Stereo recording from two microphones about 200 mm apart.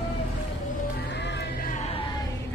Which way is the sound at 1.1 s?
60° left (ahead or behind).